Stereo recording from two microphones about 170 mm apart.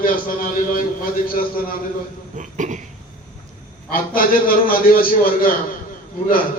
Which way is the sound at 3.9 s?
60° left (ahead or behind).